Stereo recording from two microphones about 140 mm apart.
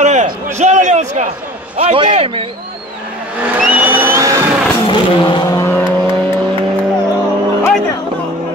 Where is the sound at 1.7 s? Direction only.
40° right (ahead or behind).